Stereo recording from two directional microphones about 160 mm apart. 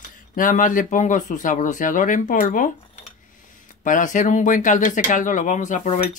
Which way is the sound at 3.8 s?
55° left (ahead or behind).